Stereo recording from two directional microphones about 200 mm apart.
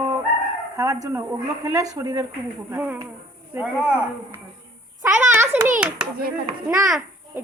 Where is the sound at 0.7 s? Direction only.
15° right (ahead or behind).